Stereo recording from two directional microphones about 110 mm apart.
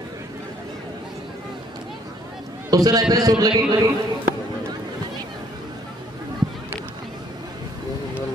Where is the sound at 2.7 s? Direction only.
35° right (ahead or behind).